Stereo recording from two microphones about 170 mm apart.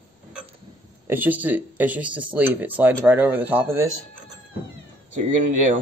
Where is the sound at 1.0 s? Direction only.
10° right (ahead or behind).